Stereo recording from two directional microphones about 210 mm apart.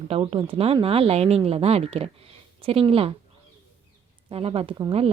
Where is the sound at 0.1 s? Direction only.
25° right (ahead or behind).